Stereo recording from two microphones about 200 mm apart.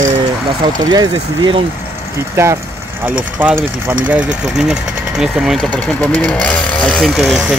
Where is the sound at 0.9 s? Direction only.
20° right (ahead or behind).